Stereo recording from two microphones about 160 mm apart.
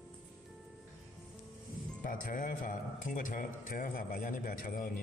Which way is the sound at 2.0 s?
60° left (ahead or behind).